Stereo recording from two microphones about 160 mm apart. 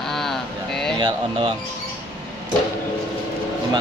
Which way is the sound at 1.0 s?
30° right (ahead or behind).